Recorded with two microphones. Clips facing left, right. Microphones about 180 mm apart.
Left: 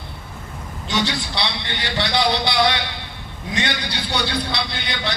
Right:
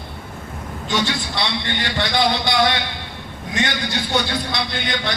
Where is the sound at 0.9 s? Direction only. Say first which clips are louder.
Right 1 dB; 50° right (ahead or behind).